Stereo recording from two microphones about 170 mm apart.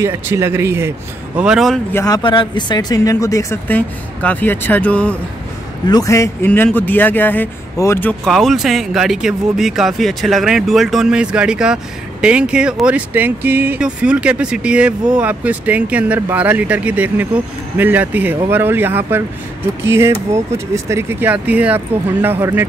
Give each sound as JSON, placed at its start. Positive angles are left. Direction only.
{"t": 0.0, "sound": "speech", "side_deg": -15}
{"t": 2.0, "sound": "speech", "side_deg": 20}
{"t": 5.9, "sound": "a man's voice", "side_deg": 20}